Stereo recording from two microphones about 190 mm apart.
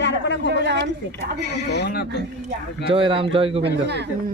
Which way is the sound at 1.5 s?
60° left (ahead or behind).